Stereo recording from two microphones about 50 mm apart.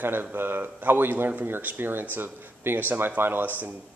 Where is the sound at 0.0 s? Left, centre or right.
Right.